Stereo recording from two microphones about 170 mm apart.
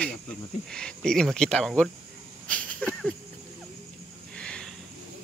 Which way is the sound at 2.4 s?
10° left (ahead or behind).